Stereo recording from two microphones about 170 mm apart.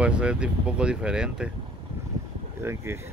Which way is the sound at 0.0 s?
5° right (ahead or behind).